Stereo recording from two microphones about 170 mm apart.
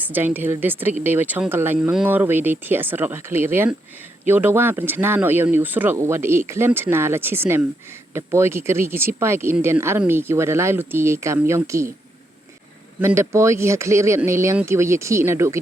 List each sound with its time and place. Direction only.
0.1 s speech: 10° right (ahead or behind)
13.0 s speech: 15° right (ahead or behind)